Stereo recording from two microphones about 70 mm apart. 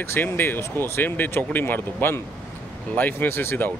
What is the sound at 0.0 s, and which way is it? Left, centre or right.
Speech, left.